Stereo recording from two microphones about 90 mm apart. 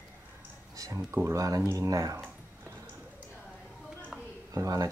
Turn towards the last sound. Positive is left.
turn(degrees=-45)  # may be behind; listen again after turning